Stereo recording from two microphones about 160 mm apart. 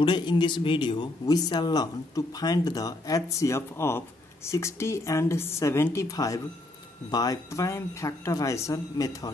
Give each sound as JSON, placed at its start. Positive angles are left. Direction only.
{"t": 0.0, "sound": "a woman's voice", "side_deg": 30}